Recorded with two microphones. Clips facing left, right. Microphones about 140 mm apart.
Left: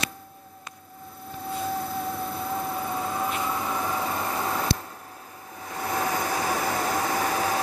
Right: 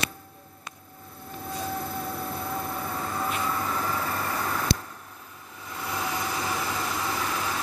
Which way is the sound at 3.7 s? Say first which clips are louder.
Left 2 dB; 15° left (ahead or behind).